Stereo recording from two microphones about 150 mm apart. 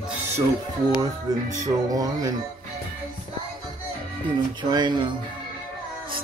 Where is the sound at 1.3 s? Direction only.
25° right (ahead or behind).